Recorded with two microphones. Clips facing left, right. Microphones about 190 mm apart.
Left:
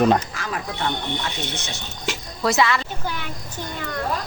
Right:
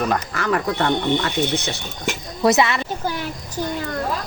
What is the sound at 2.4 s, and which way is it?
Speech, 20° right (ahead or behind).